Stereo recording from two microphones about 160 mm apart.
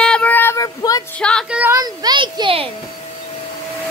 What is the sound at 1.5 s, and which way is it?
Speech, 10° right (ahead or behind).